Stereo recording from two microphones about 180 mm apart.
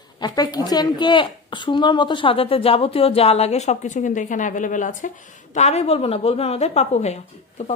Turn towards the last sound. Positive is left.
turn(degrees=40)  # may be behind; listen again after turning